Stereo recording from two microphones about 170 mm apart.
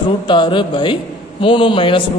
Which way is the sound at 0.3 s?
30° left (ahead or behind).